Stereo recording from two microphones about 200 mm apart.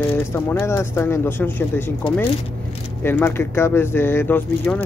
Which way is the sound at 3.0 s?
10° left (ahead or behind).